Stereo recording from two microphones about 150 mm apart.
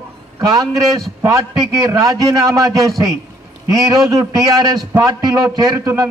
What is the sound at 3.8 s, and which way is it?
A man's voice, 20° right (ahead or behind).